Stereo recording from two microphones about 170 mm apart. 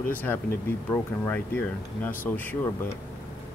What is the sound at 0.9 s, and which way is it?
Speech, 10° left (ahead or behind).